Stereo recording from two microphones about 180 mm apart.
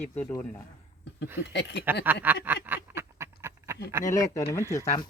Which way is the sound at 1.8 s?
10° right (ahead or behind).